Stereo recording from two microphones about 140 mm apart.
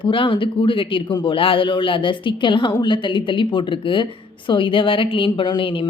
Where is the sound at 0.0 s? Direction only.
35° left (ahead or behind).